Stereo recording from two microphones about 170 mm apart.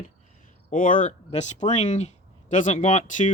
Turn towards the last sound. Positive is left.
turn(degrees=45)  # may be behind; listen again after turning